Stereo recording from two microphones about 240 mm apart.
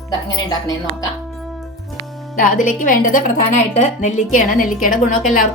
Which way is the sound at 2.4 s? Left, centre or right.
Left.